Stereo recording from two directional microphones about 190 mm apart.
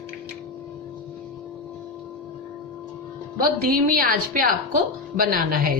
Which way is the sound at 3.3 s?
50° right (ahead or behind).